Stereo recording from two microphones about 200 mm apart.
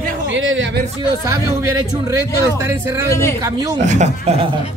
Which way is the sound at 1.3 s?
15° right (ahead or behind).